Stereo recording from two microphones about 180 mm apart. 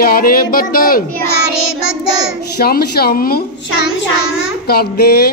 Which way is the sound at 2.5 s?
60° left (ahead or behind).